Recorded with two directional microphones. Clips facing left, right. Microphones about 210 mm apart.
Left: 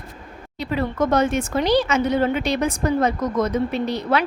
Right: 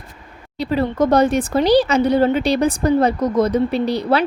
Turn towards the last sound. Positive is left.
turn(degrees=-35)  # may be behind; listen again after turning